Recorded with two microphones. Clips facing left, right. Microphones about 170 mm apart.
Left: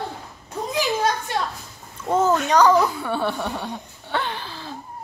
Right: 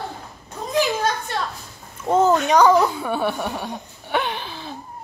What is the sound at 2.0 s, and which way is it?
Speech, 10° right (ahead or behind).